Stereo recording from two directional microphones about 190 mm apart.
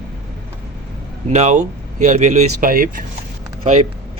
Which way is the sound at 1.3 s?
35° right (ahead or behind).